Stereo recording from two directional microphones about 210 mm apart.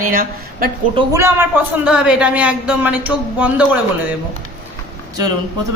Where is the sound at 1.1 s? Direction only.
10° right (ahead or behind).